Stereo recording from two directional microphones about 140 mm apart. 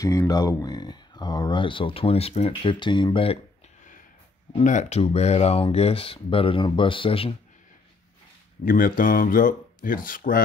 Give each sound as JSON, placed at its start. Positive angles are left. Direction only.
{"t": 0.0, "sound": "speech", "side_deg": 20}
{"t": 4.6, "sound": "speech", "side_deg": 55}
{"t": 8.6, "sound": "speech", "side_deg": 85}